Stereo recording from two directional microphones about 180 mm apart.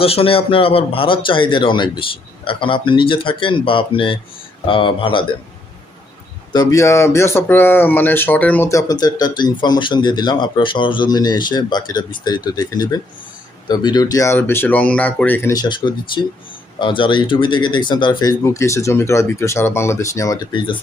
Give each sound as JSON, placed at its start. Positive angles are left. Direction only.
{"t": 0.0, "sound": "speech", "side_deg": 30}
{"t": 6.5, "sound": "speech", "side_deg": 20}
{"t": 15.7, "sound": "speech", "side_deg": 25}